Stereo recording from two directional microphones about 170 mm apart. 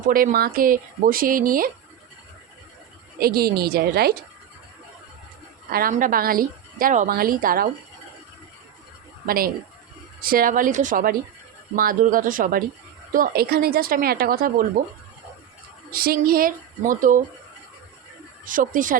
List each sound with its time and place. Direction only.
0.1 s speech: 55° right (ahead or behind)
3.2 s speech: 65° right (ahead or behind)
5.9 s speech: 55° right (ahead or behind)
9.2 s speech: 60° right (ahead or behind)
18.4 s speech: 50° right (ahead or behind)